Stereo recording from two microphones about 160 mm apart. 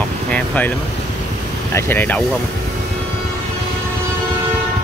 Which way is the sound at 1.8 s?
15° left (ahead or behind).